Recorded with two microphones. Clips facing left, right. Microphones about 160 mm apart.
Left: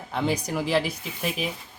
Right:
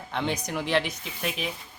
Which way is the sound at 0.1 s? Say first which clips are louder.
Left 3 dB; 5° left (ahead or behind).